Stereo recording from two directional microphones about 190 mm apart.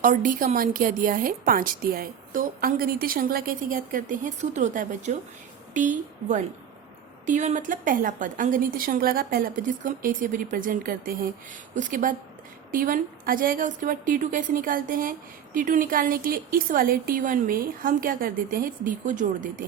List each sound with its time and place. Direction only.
0.0 s a woman's voice: 45° right (ahead or behind)